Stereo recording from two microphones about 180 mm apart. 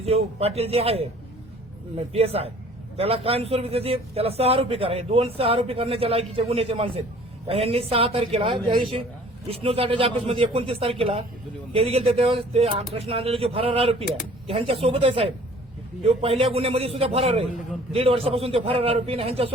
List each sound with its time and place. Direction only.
0.0 s a man's voice: 35° right (ahead or behind)